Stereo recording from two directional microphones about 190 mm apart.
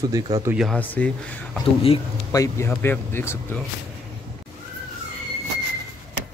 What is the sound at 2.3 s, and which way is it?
A man's voice, 15° left (ahead or behind).